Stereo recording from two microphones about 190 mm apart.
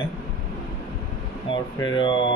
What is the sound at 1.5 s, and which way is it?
Speech, 25° left (ahead or behind).